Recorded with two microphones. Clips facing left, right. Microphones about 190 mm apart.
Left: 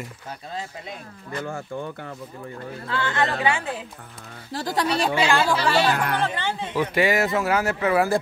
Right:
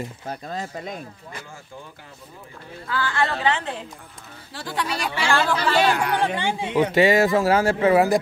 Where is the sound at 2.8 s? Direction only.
25° left (ahead or behind).